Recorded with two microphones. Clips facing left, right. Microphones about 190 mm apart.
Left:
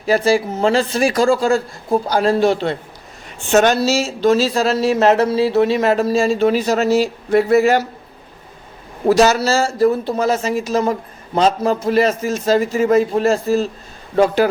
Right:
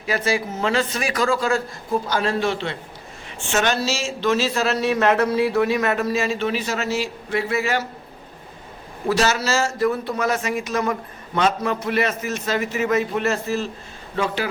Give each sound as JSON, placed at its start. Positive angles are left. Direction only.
{"t": 0.0, "sound": "speech", "side_deg": 35}
{"t": 9.0, "sound": "speech", "side_deg": 40}